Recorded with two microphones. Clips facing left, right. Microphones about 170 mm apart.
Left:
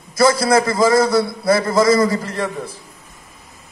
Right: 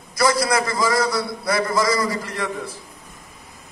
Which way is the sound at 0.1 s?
25° left (ahead or behind).